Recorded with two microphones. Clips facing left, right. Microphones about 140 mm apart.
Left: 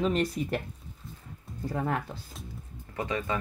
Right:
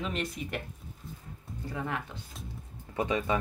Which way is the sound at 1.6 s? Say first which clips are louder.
Left 5 dB; 40° left (ahead or behind).